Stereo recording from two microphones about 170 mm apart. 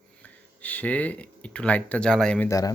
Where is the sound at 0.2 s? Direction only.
10° left (ahead or behind).